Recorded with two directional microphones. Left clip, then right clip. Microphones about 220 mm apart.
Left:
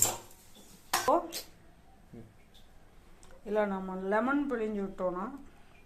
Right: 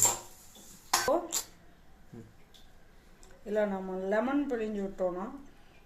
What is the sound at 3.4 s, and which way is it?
Speech, 20° left (ahead or behind).